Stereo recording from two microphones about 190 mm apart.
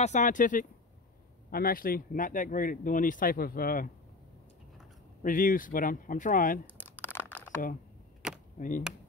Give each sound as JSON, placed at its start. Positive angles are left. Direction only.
{"t": 0.0, "sound": "speech", "side_deg": 40}
{"t": 5.2, "sound": "speech", "side_deg": 45}
{"t": 6.6, "sound": "crumpling", "side_deg": 10}
{"t": 8.5, "sound": "speech", "side_deg": 45}